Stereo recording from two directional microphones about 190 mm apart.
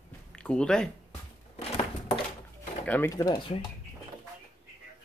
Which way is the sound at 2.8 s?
10° left (ahead or behind).